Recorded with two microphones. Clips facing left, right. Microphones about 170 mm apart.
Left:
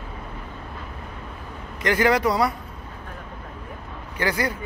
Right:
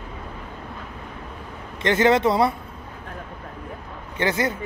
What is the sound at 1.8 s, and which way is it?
Speech, 25° right (ahead or behind).